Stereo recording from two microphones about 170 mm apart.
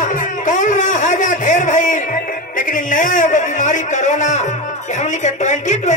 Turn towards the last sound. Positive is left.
turn(degrees=45)  # may be behind; listen again after turning